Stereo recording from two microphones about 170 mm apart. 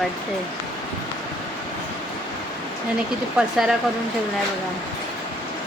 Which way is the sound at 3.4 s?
5° right (ahead or behind).